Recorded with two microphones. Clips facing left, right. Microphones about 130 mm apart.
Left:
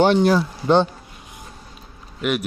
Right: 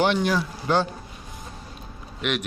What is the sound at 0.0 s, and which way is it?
Speech, 35° left (ahead or behind).